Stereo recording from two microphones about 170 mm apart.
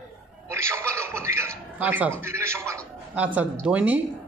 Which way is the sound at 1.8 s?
10° right (ahead or behind).